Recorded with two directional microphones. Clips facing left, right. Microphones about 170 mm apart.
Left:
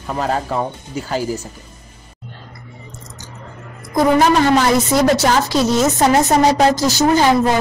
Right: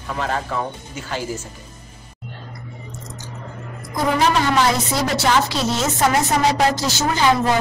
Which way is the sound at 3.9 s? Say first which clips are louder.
Left 6 dB; 45° left (ahead or behind).